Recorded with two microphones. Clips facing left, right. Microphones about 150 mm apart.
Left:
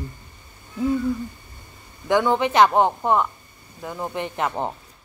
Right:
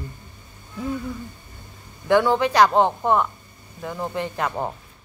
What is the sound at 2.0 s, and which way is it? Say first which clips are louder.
Speech: right 1 dB; 15° left (ahead or behind).